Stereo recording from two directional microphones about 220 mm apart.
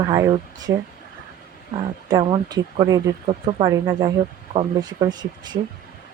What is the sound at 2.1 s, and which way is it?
Speech, 20° right (ahead or behind).